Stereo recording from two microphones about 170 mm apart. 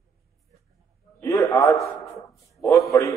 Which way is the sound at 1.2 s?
20° left (ahead or behind).